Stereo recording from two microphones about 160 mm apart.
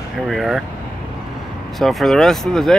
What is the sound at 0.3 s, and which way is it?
Speech, centre (ahead or behind).